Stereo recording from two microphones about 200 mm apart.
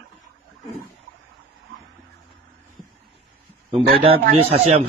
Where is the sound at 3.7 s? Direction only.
25° right (ahead or behind).